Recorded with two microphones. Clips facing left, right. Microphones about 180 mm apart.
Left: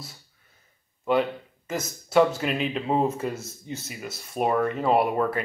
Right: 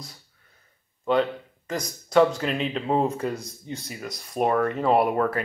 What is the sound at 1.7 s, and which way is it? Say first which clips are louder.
Speech: even; 5° left (ahead or behind).